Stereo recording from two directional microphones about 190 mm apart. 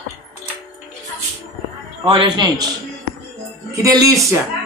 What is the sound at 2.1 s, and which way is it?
Speech, 25° right (ahead or behind).